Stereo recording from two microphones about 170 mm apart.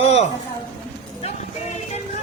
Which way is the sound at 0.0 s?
40° left (ahead or behind).